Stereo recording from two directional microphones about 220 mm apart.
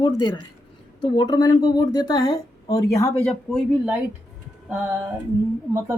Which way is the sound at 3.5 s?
Centre (ahead or behind).